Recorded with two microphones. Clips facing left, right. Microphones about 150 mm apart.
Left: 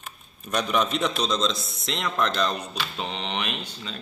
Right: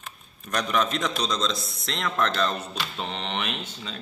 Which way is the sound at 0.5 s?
10° left (ahead or behind).